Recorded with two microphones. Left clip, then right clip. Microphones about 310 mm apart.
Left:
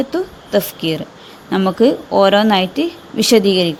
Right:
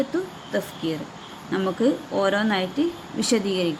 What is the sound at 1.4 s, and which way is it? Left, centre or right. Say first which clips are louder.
A woman's voice: left 9 dB; left.